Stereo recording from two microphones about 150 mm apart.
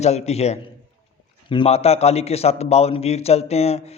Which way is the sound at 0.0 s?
45° left (ahead or behind).